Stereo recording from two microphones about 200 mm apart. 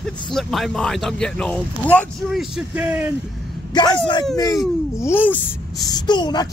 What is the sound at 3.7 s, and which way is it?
Speech, 20° left (ahead or behind).